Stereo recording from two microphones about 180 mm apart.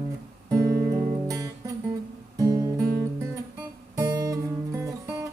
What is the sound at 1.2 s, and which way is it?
Music, 20° right (ahead or behind).